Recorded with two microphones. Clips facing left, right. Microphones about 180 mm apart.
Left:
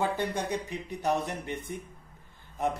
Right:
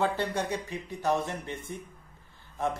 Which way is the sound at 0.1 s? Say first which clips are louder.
Even; 15° left (ahead or behind).